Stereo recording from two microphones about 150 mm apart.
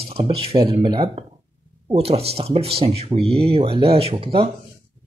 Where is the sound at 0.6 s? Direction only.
30° right (ahead or behind).